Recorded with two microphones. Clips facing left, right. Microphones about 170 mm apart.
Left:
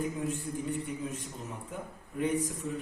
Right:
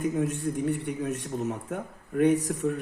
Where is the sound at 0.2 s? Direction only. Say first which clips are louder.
Right 7 dB; 70° right (ahead or behind).